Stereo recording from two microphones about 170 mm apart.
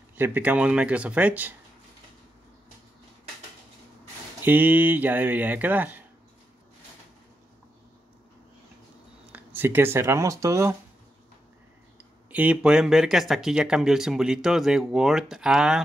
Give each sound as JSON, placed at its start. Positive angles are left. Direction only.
{"t": 0.2, "sound": "speech", "side_deg": -10}
{"t": 4.4, "sound": "speech", "side_deg": -10}
{"t": 9.2, "sound": "speech", "side_deg": -10}
{"t": 12.0, "sound": "speech", "side_deg": -10}